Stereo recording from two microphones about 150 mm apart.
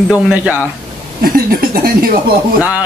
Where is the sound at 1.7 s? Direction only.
80° right.